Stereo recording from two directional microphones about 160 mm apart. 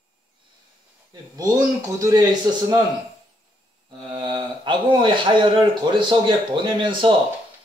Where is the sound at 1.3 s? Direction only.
20° right (ahead or behind).